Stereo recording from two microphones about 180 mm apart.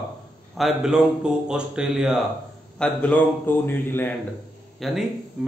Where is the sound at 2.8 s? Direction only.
10° left (ahead or behind).